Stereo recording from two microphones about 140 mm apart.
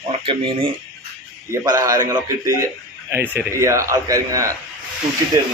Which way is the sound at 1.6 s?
25° right (ahead or behind).